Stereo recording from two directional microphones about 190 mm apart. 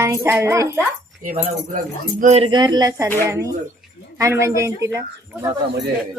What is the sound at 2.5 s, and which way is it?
Speech, 20° right (ahead or behind).